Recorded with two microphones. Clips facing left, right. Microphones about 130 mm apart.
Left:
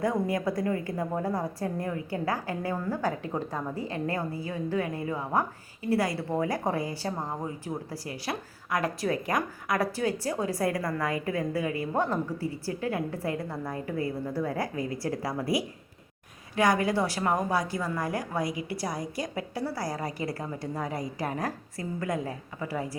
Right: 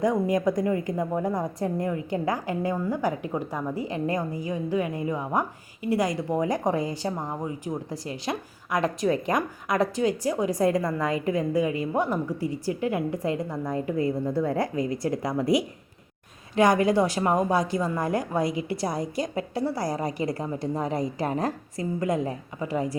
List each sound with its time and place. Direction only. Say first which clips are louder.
0.0 s a woman's voice: right 4 dB; 15° right (ahead or behind)